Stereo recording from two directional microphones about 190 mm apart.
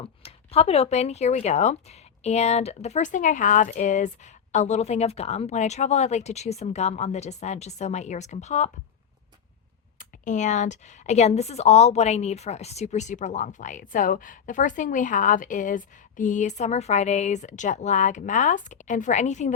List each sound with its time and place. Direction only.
0.0 s a woman's voice: 30° left (ahead or behind)
10.0 s a woman's voice: 40° left (ahead or behind)